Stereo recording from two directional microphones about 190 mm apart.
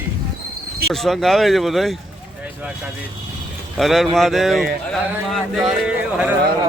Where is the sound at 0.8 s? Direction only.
Centre (ahead or behind).